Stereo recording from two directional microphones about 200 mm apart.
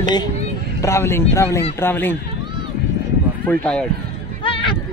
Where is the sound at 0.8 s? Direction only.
15° left (ahead or behind).